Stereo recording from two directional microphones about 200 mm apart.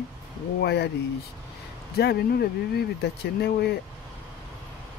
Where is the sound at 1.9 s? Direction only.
55° left (ahead or behind).